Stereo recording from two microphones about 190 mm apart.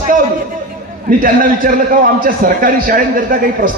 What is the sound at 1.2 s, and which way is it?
A man's voice, 50° right (ahead or behind).